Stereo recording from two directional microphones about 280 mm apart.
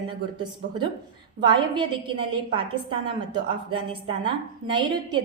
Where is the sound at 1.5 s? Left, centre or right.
Centre.